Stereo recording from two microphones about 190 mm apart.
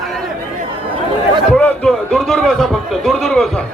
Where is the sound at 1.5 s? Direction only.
5° left (ahead or behind).